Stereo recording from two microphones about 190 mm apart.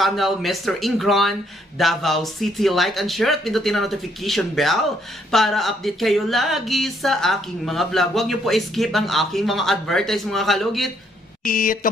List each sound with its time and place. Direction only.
0.0 s speech: centre (ahead or behind)
11.4 s speech: 45° left (ahead or behind)